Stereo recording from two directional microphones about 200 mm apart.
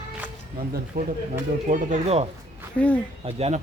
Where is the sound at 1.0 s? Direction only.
45° right (ahead or behind).